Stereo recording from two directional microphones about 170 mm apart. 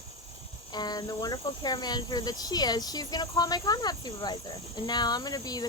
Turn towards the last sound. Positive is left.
turn(degrees=25)  # may be behind; listen again after turning